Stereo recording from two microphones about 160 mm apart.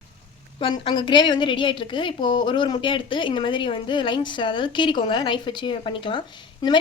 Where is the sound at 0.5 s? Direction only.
30° left (ahead or behind).